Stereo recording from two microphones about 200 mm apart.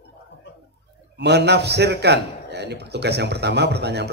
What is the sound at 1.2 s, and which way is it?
A man's voice, 55° right (ahead or behind).